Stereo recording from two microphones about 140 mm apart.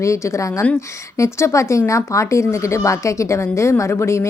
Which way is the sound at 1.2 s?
20° left (ahead or behind).